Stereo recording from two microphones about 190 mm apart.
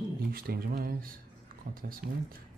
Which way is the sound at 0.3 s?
50° right (ahead or behind).